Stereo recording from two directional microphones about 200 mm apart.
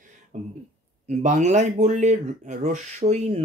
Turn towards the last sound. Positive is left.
turn(degrees=-35)  # may be behind; listen again after turning